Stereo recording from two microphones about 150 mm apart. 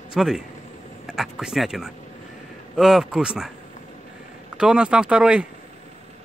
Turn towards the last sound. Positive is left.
turn(degrees=-5)  # may be behind; listen again after turning